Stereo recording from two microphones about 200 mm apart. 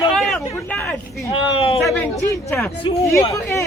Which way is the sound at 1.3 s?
25° left (ahead or behind).